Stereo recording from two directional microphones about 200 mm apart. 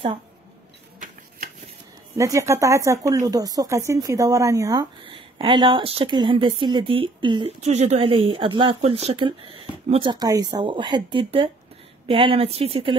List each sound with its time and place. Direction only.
2.1 s speech: 15° right (ahead or behind)